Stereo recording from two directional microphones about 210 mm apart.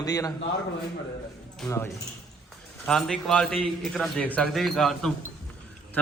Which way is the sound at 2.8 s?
5° left (ahead or behind).